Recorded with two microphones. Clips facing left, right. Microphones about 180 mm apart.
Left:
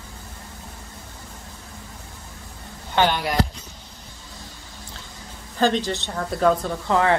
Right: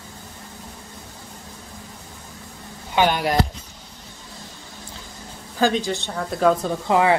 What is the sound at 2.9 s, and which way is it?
Speech, 10° right (ahead or behind).